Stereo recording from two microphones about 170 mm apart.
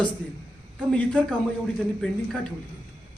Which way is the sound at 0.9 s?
5° left (ahead or behind).